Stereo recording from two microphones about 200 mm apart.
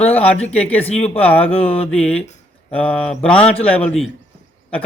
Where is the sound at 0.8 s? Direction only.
30° left (ahead or behind).